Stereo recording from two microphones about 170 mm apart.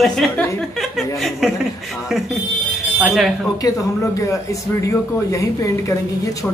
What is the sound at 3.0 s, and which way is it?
Speech, centre (ahead or behind).